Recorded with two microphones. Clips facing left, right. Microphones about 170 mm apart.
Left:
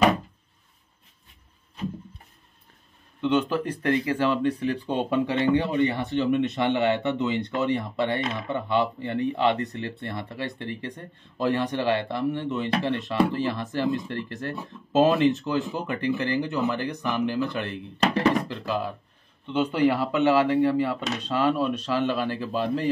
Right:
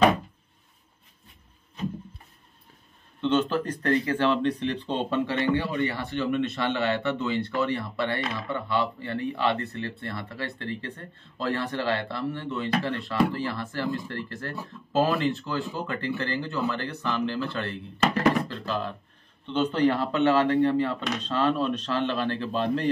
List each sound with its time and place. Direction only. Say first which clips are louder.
3.2 s speech: left 1 dB; 10° left (ahead or behind)